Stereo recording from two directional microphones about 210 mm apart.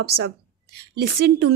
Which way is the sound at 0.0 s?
50° right (ahead or behind).